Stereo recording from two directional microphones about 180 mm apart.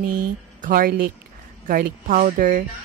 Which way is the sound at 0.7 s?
50° right (ahead or behind).